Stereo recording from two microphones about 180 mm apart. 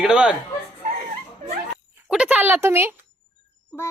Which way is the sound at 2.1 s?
5° right (ahead or behind).